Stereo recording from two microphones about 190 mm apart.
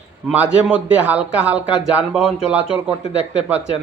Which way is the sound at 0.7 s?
5° right (ahead or behind).